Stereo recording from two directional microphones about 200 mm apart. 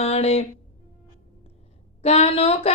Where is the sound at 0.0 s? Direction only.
30° left (ahead or behind).